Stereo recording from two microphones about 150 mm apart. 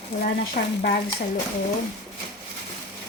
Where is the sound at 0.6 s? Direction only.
90° left.